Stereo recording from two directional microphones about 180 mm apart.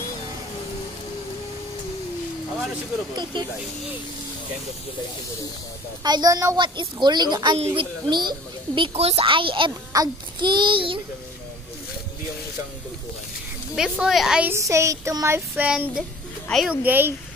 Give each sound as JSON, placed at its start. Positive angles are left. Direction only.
{"t": 6.0, "sound": "a child's voice", "side_deg": -20}
{"t": 13.7, "sound": "speech", "side_deg": -5}
{"t": 16.8, "sound": "speech", "side_deg": -10}